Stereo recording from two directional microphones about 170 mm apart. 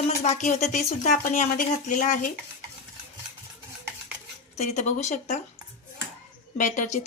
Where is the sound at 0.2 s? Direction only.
40° left (ahead or behind).